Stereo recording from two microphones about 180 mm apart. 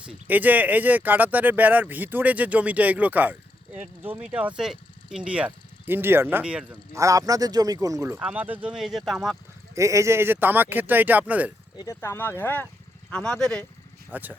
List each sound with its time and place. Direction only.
0.0 s speech: 5° right (ahead or behind)
6.9 s speech: 15° right (ahead or behind); by 9.4 s centre (ahead or behind)
9.7 s speech: 15° right (ahead or behind)
11.8 s speech: 15° left (ahead or behind)
14.1 s speech: 10° right (ahead or behind)